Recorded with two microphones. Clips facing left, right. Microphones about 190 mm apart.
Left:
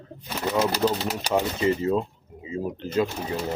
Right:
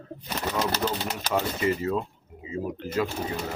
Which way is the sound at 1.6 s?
25° left (ahead or behind).